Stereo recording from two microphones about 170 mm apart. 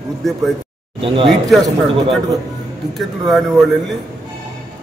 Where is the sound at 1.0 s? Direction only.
30° right (ahead or behind).